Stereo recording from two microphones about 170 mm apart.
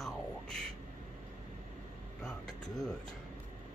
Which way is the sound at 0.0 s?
5° left (ahead or behind).